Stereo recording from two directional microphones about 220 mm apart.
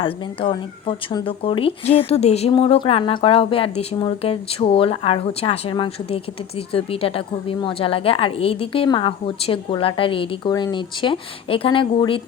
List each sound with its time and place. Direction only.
0.0 s speech: 25° left (ahead or behind)